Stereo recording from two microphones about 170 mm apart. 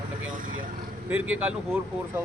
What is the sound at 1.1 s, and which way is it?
A man's voice, 10° right (ahead or behind).